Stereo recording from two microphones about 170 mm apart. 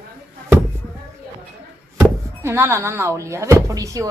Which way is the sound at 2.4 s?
15° right (ahead or behind).